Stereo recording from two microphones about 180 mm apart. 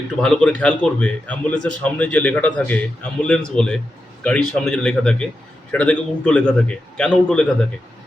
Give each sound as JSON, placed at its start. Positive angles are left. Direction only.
{"t": 0.2, "sound": "a man's voice", "side_deg": 5}